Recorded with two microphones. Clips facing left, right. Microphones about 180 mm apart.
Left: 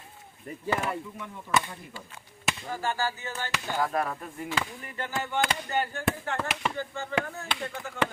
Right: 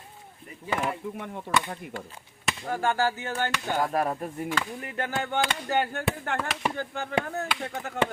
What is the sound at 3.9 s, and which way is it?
Speech, 35° right (ahead or behind).